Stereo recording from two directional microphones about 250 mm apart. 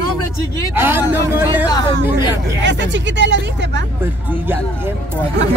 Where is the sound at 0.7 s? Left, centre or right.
Centre.